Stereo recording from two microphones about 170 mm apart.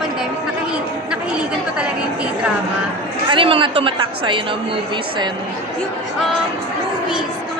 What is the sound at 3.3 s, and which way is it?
A woman's voice, 30° right (ahead or behind).